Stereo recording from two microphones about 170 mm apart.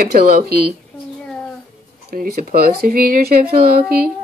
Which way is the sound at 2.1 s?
55° right (ahead or behind).